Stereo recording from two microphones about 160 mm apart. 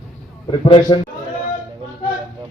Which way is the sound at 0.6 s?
30° left (ahead or behind).